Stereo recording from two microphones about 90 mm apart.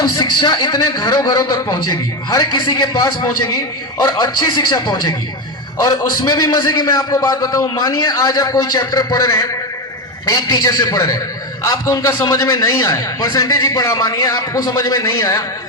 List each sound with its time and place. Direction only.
0.0 s a man's voice: 50° left (ahead or behind)